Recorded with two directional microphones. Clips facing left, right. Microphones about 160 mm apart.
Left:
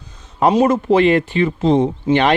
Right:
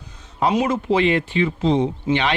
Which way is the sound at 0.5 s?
45° left (ahead or behind).